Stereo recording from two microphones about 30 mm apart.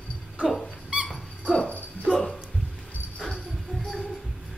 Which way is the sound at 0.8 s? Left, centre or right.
Right.